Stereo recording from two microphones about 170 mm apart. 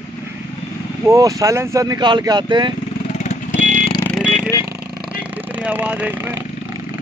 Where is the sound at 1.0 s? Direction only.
20° right (ahead or behind).